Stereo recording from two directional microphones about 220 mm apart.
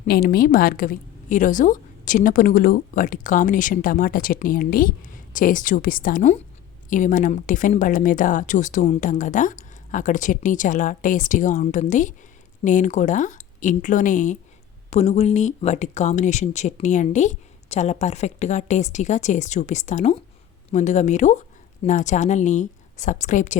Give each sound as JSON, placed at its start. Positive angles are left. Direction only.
{"t": 0.0, "sound": "a woman's voice", "side_deg": 40}